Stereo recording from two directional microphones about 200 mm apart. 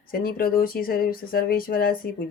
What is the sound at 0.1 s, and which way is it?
Speech, 50° left (ahead or behind).